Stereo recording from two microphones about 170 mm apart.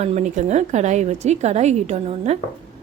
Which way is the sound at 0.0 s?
40° right (ahead or behind).